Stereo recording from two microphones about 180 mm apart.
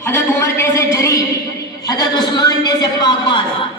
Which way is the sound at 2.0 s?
20° left (ahead or behind).